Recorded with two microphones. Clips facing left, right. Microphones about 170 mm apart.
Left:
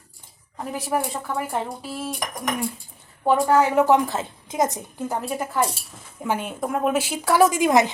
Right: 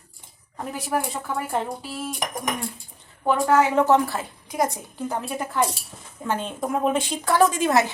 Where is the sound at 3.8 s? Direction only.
15° left (ahead or behind).